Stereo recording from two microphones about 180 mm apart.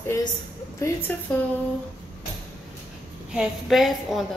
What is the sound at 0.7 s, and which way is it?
Speech, 15° left (ahead or behind).